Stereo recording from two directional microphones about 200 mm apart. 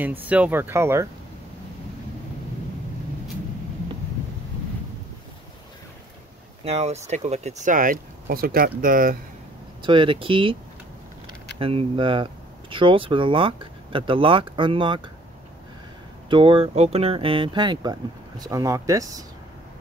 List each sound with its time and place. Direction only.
0.0 s speech: 10° right (ahead or behind)
6.6 s speech: 30° right (ahead or behind)
9.8 s speech: 25° right (ahead or behind)
16.3 s speech: 25° right (ahead or behind)